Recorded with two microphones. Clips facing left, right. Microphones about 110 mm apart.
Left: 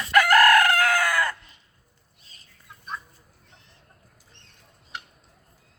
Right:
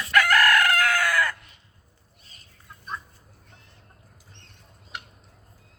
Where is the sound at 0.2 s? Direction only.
30° left (ahead or behind).